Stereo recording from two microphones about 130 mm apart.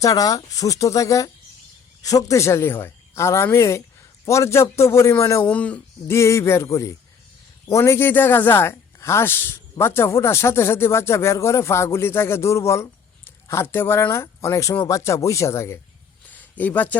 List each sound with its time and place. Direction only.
0.0 s speech: 25° left (ahead or behind)
5.5 s speech: 10° left (ahead or behind)
6.1 s speech: 20° left (ahead or behind)
16.3 s a sound: 10° left (ahead or behind)